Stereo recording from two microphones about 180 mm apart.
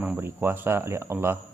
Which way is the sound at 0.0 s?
10° right (ahead or behind).